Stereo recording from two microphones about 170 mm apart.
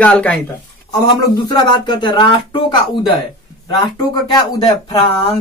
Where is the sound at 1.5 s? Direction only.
25° left (ahead or behind).